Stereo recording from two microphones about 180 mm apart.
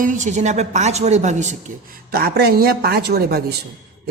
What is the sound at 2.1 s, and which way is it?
A man's voice, 60° right (ahead or behind).